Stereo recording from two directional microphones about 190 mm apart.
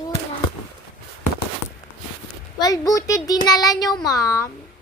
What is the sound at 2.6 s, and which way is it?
Child singing, 20° left (ahead or behind).